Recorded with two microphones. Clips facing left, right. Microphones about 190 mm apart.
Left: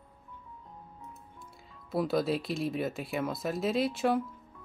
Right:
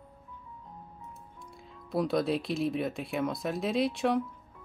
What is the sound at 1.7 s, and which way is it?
Speech, centre (ahead or behind).